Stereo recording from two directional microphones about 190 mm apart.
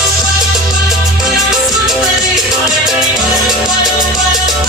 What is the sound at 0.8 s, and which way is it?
Music, centre (ahead or behind).